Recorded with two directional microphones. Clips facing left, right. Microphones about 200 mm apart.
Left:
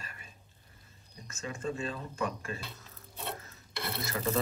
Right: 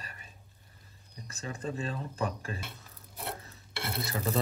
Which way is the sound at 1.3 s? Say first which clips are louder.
Left 1 dB; 35° right (ahead or behind).